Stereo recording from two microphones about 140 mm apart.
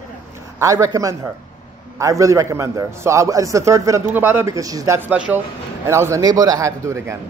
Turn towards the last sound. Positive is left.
turn(degrees=-20)  # may be behind; listen again after turning